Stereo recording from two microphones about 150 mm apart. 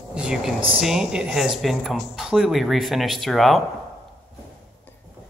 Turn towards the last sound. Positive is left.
turn(degrees=0)  # may be behind; listen again after turning